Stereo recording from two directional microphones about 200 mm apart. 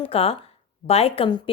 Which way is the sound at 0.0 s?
30° left (ahead or behind).